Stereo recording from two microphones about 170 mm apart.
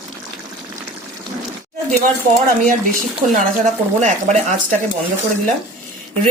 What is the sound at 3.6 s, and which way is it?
Speech, 45° right (ahead or behind).